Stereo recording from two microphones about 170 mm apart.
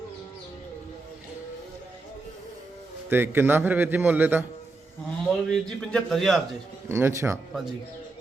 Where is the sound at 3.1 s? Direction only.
10° right (ahead or behind).